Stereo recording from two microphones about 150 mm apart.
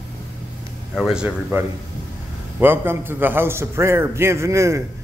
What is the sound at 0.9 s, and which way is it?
A man's voice, centre (ahead or behind).